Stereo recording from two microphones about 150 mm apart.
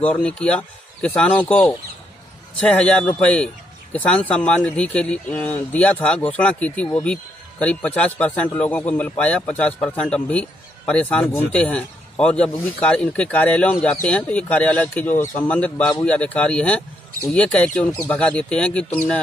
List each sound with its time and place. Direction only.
0.0 s speech: 5° left (ahead or behind)